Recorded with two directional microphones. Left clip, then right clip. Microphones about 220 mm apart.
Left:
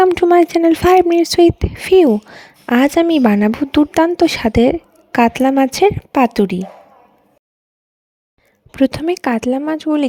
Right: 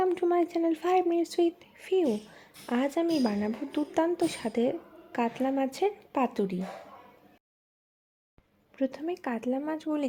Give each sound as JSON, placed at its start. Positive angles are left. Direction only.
{"t": 0.0, "sound": "speech", "side_deg": 45}
{"t": 8.7, "sound": "speech", "side_deg": 45}